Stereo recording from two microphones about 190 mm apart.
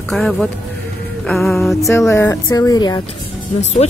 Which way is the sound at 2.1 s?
15° left (ahead or behind).